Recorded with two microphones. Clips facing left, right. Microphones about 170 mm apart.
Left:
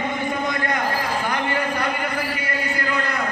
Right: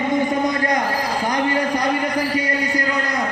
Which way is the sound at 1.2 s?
40° right (ahead or behind).